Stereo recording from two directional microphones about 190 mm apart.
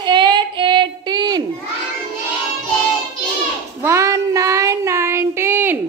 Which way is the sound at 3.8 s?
15° right (ahead or behind).